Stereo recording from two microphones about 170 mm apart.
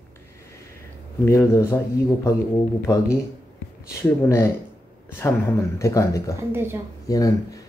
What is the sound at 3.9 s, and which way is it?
Speech, 15° left (ahead or behind).